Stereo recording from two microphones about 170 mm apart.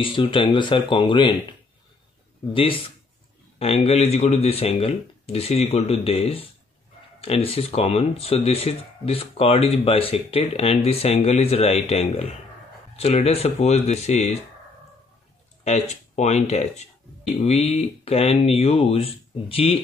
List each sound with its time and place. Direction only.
0.0 s speech: 30° left (ahead or behind)
2.5 s speech: 30° left (ahead or behind)
15.6 s speech: 40° left (ahead or behind)